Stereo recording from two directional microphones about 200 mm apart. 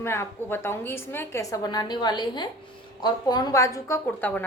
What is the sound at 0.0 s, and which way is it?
A woman's voice, 10° left (ahead or behind).